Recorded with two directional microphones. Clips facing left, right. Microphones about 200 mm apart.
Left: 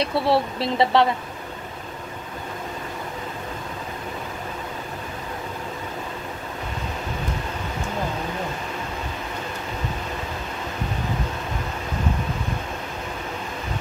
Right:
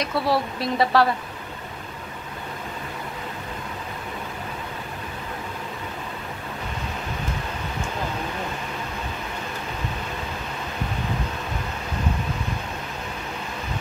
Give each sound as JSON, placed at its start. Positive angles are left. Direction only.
{"t": 0.0, "sound": "speech", "side_deg": 25}